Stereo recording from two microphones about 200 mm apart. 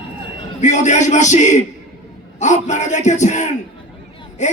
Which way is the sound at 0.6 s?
35° left (ahead or behind).